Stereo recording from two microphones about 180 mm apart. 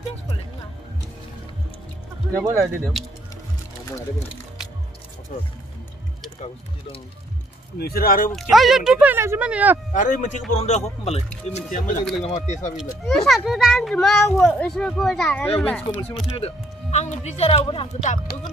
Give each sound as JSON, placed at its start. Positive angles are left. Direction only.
{"t": 2.3, "sound": "speech", "side_deg": -15}
{"t": 2.9, "sound": "speech", "side_deg": 0}
{"t": 5.3, "sound": "speech", "side_deg": 50}
{"t": 7.7, "sound": "speech", "side_deg": 60}
{"t": 8.3, "sound": "speech", "side_deg": 0}
{"t": 9.9, "sound": "speech", "side_deg": 45}
{"t": 13.0, "sound": "speech", "side_deg": 0}
{"t": 16.3, "sound": "speech", "side_deg": 35}